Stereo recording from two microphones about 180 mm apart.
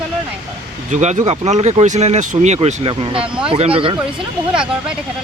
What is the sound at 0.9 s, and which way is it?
Speech, 40° right (ahead or behind).